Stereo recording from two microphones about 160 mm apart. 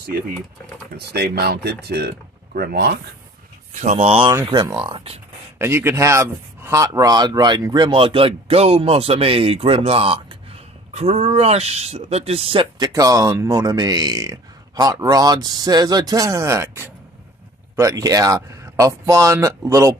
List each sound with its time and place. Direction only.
0.1 s speech: 70° right (ahead or behind)
0.9 s speech: 90° right
2.5 s speech: 75° right (ahead or behind)
3.8 s speech: 45° right (ahead or behind)
4.3 s speech: 20° right (ahead or behind)
5.6 s speech: 15° right (ahead or behind)